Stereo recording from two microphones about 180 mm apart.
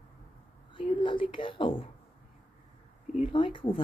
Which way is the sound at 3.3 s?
30° left (ahead or behind).